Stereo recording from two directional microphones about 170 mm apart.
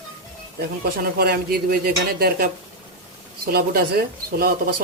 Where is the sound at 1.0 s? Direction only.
65° right (ahead or behind).